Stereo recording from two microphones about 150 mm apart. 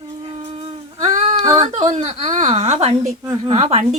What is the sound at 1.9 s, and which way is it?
Speech, 45° right (ahead or behind).